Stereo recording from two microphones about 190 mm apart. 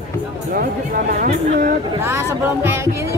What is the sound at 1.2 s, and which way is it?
Speech, 45° right (ahead or behind).